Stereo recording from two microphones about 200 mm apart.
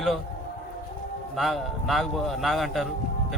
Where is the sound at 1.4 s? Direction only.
Centre (ahead or behind).